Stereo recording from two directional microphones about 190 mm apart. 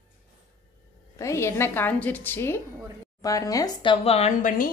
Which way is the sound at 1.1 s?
15° left (ahead or behind).